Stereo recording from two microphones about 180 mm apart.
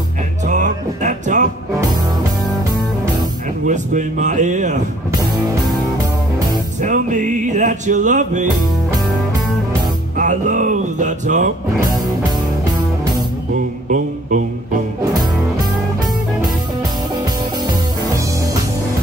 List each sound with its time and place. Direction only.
0.5 s music: 45° right (ahead or behind)
3.6 s speech: 45° right (ahead or behind)
6.8 s music: 45° right (ahead or behind)
10.1 s music: 45° right (ahead or behind)